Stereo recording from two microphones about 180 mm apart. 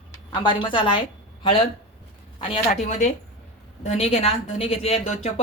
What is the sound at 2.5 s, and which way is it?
A woman's voice, 40° left (ahead or behind).